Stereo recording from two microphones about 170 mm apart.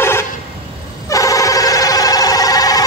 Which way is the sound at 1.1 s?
20° left (ahead or behind).